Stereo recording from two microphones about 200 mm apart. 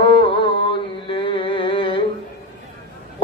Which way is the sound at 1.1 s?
25° left (ahead or behind).